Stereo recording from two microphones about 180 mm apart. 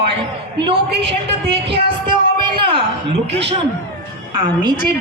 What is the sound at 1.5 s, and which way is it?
A woman's voice, 30° right (ahead or behind).